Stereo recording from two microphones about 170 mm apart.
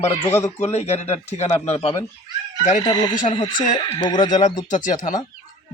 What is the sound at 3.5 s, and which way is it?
Speech, 50° left (ahead or behind).